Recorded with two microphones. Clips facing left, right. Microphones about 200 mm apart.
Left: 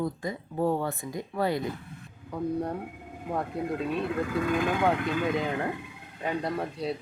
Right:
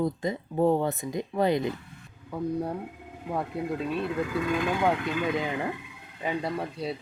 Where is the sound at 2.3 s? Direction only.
5° right (ahead or behind).